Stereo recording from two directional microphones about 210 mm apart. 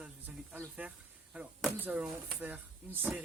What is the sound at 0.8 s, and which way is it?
Speech, 5° right (ahead or behind).